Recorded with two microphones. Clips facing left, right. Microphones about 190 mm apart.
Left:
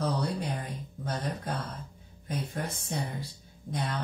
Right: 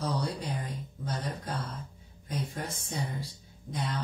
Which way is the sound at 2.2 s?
55° left (ahead or behind).